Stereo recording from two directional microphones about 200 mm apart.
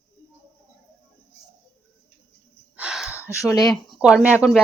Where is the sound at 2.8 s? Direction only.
5° right (ahead or behind).